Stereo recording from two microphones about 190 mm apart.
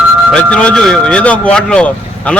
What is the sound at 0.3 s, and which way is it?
Speech, 5° left (ahead or behind).